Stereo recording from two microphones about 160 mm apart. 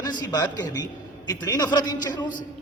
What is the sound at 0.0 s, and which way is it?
A man's voice, 25° left (ahead or behind).